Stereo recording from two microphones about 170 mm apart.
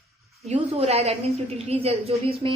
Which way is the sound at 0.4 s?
35° right (ahead or behind).